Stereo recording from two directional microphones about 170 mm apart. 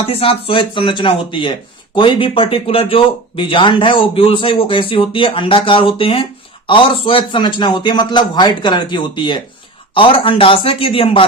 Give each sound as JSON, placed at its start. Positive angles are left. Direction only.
{"t": 0.0, "sound": "a man's voice", "side_deg": 35}